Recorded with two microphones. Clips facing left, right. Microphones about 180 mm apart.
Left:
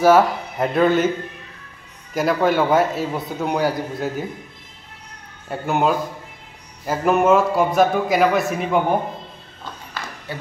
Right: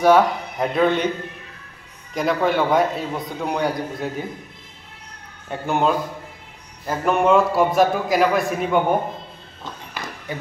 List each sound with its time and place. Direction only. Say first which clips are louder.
0.0 s a man's voice: left 1 dB; 5° left (ahead or behind)
2.1 s a man's voice: left 2 dB; 5° left (ahead or behind)
5.5 s a man's voice: left 1 dB; 5° left (ahead or behind)